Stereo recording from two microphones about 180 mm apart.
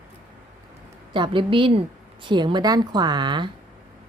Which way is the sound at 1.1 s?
25° right (ahead or behind).